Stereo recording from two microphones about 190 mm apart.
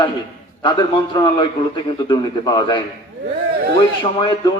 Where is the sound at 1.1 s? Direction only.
25° left (ahead or behind).